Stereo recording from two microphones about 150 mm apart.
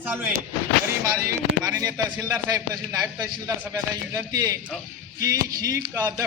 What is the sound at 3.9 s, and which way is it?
A man's voice, 20° right (ahead or behind).